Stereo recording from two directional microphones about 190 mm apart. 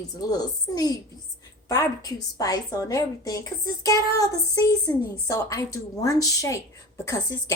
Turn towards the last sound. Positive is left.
turn(degrees=15)  # may be behind; listen again after turning